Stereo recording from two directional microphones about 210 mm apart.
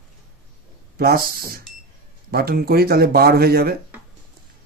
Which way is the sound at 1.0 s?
45° right (ahead or behind).